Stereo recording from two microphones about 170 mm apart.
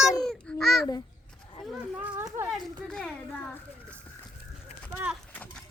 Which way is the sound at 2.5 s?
5° left (ahead or behind).